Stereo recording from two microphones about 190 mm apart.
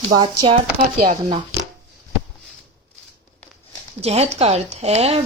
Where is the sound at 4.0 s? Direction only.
35° right (ahead or behind).